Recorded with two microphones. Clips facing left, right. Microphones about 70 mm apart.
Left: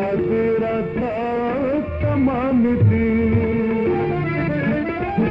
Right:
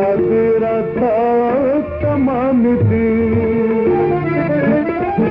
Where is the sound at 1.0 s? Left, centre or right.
Right.